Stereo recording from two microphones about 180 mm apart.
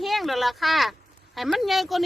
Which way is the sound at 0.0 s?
Centre (ahead or behind).